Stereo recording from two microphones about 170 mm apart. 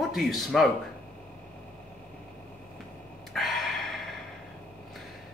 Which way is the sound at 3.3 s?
Centre (ahead or behind).